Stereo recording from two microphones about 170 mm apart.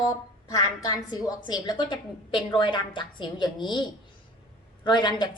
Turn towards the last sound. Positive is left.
turn(degrees=25)  # may be behind; listen again after turning